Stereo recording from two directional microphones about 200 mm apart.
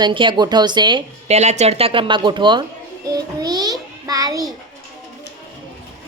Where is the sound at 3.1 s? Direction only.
20° right (ahead or behind).